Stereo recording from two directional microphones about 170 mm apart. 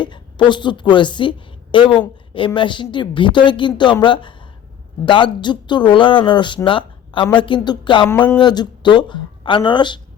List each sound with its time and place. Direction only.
0.0 s a woman's voice: 25° left (ahead or behind)